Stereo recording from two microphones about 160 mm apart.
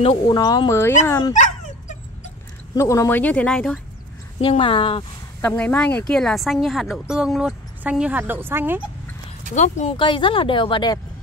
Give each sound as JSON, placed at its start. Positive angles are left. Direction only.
{"t": 0.3, "sound": "speech", "side_deg": 25}
{"t": 1.3, "sound": "dog", "side_deg": 50}
{"t": 2.7, "sound": "speech", "side_deg": 20}
{"t": 4.4, "sound": "speech", "side_deg": 35}
{"t": 5.6, "sound": "a woman's voice", "side_deg": 10}
{"t": 9.5, "sound": "speech", "side_deg": 50}
{"t": 9.9, "sound": "speech", "side_deg": 30}